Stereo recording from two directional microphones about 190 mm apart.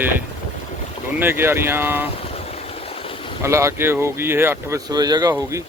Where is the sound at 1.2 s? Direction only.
10° right (ahead or behind).